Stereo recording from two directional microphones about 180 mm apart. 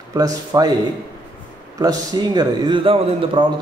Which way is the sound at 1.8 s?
20° right (ahead or behind).